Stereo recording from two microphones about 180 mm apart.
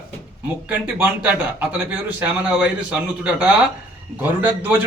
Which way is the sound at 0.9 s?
10° right (ahead or behind).